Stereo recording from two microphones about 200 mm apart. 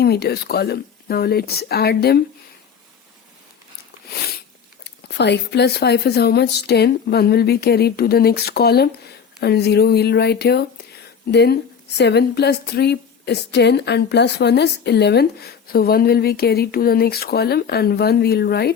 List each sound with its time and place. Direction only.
0.0 s a woman's voice: 50° left (ahead or behind)
4.8 s a woman's voice: 60° left (ahead or behind)